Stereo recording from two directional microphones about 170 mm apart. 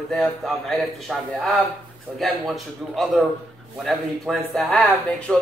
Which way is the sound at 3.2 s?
Centre (ahead or behind).